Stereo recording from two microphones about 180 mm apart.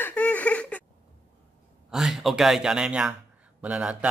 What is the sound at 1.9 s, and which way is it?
Speech, centre (ahead or behind).